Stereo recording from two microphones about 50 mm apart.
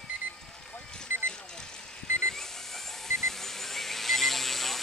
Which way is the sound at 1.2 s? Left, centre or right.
Centre.